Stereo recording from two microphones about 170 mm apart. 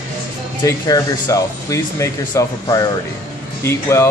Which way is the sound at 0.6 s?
20° left (ahead or behind).